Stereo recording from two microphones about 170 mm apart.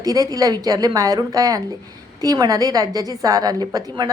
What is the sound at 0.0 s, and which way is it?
A woman's voice, 20° right (ahead or behind).